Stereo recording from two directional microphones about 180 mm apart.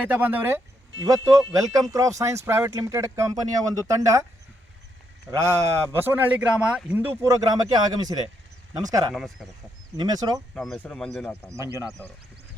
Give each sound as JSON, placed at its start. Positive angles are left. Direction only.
{"t": 0.0, "sound": "speech", "side_deg": -10}
{"t": 5.3, "sound": "speech", "side_deg": -15}
{"t": 9.1, "sound": "speech", "side_deg": 0}
{"t": 10.0, "sound": "speech", "side_deg": -20}
{"t": 10.5, "sound": "speech", "side_deg": 0}
{"t": 11.4, "sound": "speech", "side_deg": -15}